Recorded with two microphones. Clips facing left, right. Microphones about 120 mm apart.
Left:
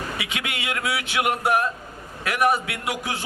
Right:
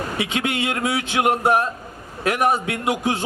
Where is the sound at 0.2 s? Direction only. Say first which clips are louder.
Right 8 dB; 30° right (ahead or behind).